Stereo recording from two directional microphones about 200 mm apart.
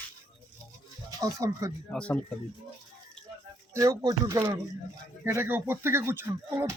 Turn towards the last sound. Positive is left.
turn(degrees=-15)  # may be behind; listen again after turning